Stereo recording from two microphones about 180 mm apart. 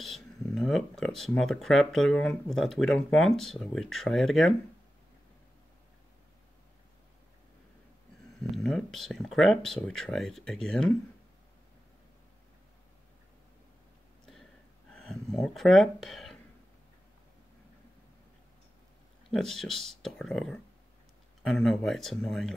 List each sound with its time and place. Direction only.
0.0 s speech: centre (ahead or behind)
8.5 s speech: centre (ahead or behind)
14.9 s speech: 5° left (ahead or behind)
19.3 s speech: centre (ahead or behind)